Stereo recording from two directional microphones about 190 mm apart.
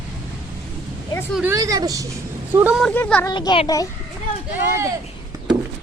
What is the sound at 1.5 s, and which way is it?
Speech, 20° right (ahead or behind).